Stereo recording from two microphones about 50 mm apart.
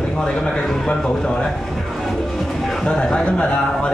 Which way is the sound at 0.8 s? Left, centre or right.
Centre.